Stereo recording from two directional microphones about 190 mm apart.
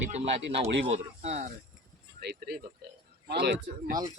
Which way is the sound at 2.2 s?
55° right (ahead or behind).